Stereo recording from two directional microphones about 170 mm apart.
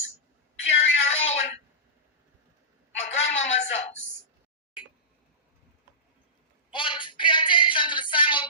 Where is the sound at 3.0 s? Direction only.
40° left (ahead or behind).